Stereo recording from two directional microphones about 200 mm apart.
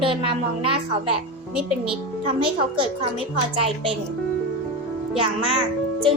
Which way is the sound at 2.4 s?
25° right (ahead or behind).